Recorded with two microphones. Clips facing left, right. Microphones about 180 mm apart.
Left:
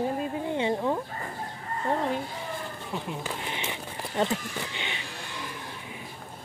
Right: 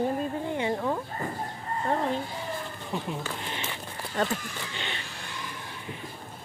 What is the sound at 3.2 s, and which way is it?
Speech, 15° left (ahead or behind).